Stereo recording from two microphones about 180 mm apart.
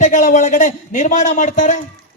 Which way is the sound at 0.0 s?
45° left (ahead or behind).